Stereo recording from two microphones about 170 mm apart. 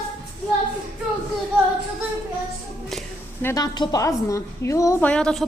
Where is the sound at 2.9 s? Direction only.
Centre (ahead or behind).